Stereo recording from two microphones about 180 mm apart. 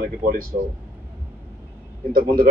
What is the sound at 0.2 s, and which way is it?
Speech, 55° right (ahead or behind).